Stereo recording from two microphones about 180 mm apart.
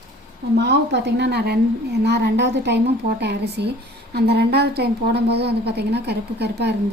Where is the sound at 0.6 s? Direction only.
70° right (ahead or behind).